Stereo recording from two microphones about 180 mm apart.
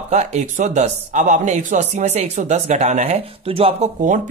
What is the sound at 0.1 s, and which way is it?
Speech, 40° right (ahead or behind).